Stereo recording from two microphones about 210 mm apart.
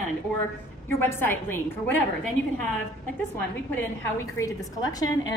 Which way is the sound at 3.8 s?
15° left (ahead or behind).